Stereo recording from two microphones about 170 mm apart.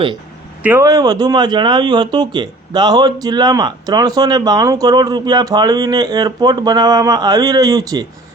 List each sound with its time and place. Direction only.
0.6 s speech: 15° right (ahead or behind)